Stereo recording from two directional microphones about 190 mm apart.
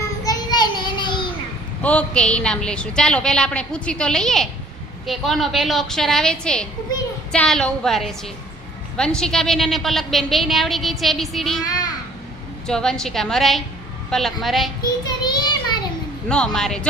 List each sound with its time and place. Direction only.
0.3 s child singing: 25° left (ahead or behind)
1.8 s a woman's voice: 5° left (ahead or behind)
12.6 s a woman's voice: 5° left (ahead or behind)
15.0 s a child's voice: 20° left (ahead or behind)
16.3 s a woman's voice: 5° left (ahead or behind)